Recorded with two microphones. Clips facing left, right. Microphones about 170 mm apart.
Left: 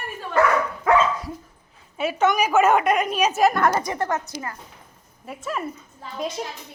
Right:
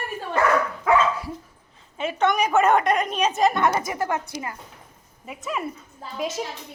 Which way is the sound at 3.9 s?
10° right (ahead or behind).